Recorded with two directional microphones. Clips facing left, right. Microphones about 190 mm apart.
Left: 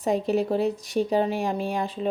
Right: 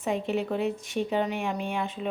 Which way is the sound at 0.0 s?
40° left (ahead or behind).